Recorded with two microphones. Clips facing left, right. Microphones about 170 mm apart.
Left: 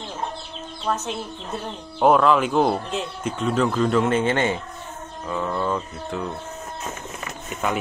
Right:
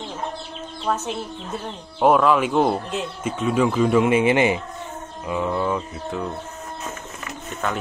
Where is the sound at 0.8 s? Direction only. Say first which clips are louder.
Right 1 dB; 10° right (ahead or behind).